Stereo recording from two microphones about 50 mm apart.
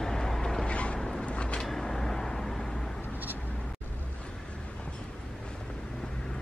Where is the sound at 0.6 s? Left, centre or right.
Left.